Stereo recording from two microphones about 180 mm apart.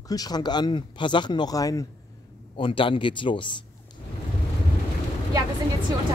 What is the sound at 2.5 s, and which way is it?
Speech, 30° left (ahead or behind).